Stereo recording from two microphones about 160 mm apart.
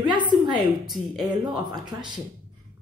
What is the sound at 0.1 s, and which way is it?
Speech, 30° right (ahead or behind).